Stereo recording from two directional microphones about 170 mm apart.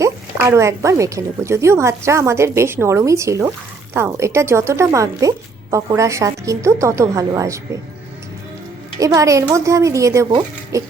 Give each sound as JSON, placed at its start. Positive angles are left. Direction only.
{"t": 0.0, "sound": "speech", "side_deg": -15}
{"t": 9.0, "sound": "speech", "side_deg": -20}